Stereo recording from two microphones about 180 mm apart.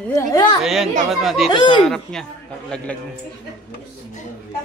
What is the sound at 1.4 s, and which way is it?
Speech, 25° left (ahead or behind).